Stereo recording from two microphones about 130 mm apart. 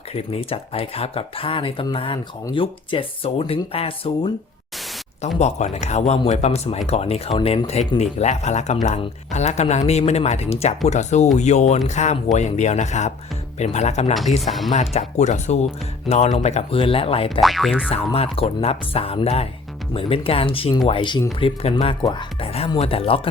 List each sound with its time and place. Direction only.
0.1 s speech: 50° left (ahead or behind)
5.4 s speech: 60° left (ahead or behind)
17.4 s boing: centre (ahead or behind)
17.8 s speech: 50° left (ahead or behind)
22.0 s speech: 35° left (ahead or behind)
22.8 s speech: 45° left (ahead or behind)